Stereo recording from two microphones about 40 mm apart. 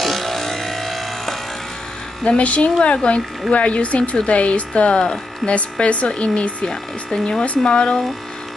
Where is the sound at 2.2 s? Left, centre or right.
Left.